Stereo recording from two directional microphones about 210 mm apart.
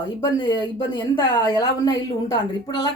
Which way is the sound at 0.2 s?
20° left (ahead or behind).